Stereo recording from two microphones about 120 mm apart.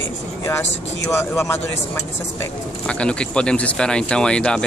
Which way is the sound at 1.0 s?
25° left (ahead or behind).